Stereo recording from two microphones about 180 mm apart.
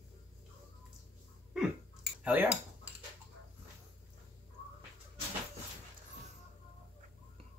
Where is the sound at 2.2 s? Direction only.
10° right (ahead or behind).